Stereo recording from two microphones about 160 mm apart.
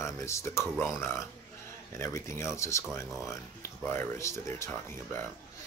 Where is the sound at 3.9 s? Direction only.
15° left (ahead or behind).